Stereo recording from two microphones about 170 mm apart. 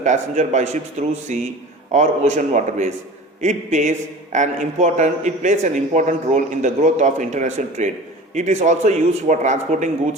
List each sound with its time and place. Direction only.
0.0 s a man's voice: 45° right (ahead or behind)